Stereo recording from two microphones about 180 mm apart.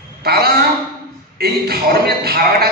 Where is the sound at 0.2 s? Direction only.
60° right (ahead or behind).